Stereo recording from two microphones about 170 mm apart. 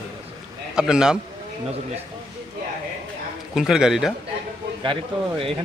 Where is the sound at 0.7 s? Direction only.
5° right (ahead or behind).